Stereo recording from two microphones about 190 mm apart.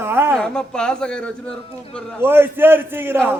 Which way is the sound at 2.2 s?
10° right (ahead or behind).